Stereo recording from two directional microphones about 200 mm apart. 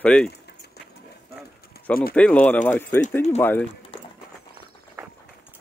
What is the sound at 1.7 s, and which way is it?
Bird, 50° left (ahead or behind).